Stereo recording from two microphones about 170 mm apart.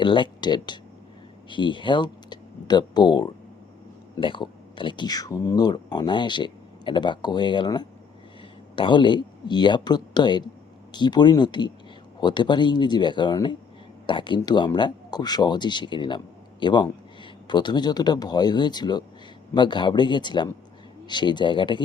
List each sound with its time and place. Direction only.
0.0 s speech: 30° left (ahead or behind)